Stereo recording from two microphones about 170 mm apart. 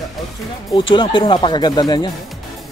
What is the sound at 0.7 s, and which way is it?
A man's voice, 30° left (ahead or behind).